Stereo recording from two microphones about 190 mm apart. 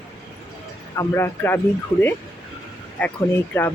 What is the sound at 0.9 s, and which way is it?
Speech, 15° left (ahead or behind).